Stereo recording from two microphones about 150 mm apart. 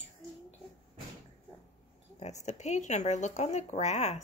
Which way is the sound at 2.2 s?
50° left (ahead or behind).